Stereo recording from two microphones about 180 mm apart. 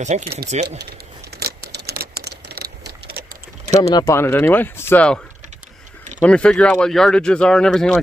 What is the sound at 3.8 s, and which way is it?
Speech, 20° left (ahead or behind).